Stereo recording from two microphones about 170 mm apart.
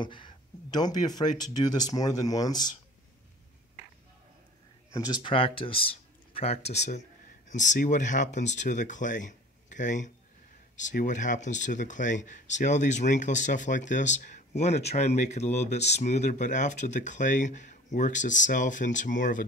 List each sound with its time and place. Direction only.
0.0 s speech: 30° left (ahead or behind)
4.9 s speech: 25° left (ahead or behind); by 19.4 s 50° left (ahead or behind)